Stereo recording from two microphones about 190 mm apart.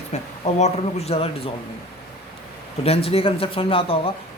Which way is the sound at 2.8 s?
30° left (ahead or behind).